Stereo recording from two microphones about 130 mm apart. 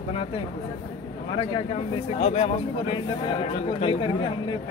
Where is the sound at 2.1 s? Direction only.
50° left (ahead or behind).